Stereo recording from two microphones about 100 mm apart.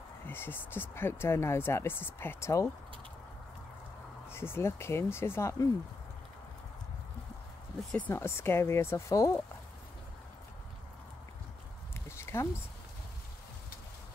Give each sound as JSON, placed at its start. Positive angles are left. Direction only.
{"t": 0.3, "sound": "speech", "side_deg": 20}
{"t": 4.3, "sound": "speech", "side_deg": 25}
{"t": 8.1, "sound": "speech", "side_deg": 25}
{"t": 12.2, "sound": "a sound", "side_deg": 25}